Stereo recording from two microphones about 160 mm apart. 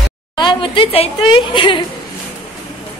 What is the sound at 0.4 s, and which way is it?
A woman's voice, 30° left (ahead or behind).